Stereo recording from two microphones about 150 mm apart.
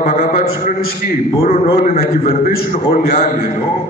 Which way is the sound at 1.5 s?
45° left (ahead or behind).